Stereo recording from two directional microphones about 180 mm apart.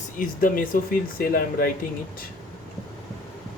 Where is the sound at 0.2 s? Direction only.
50° left (ahead or behind).